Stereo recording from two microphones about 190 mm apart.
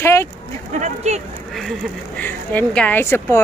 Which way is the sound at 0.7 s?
35° right (ahead or behind).